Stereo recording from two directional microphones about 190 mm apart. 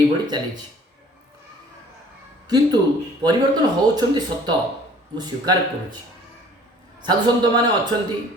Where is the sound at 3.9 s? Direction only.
20° right (ahead or behind).